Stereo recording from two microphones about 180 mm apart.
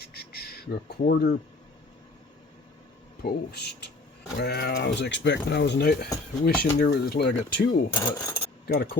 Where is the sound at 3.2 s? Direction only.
65° left (ahead or behind).